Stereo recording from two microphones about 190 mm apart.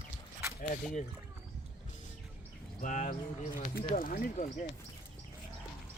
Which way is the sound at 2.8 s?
40° left (ahead or behind).